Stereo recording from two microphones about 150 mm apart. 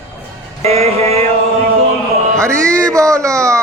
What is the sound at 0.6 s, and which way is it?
Music, 45° right (ahead or behind).